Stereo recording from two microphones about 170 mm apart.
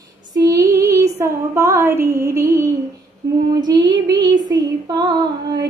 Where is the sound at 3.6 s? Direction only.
25° right (ahead or behind).